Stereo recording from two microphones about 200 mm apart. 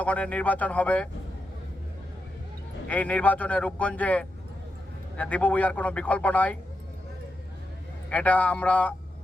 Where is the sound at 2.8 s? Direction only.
5° left (ahead or behind).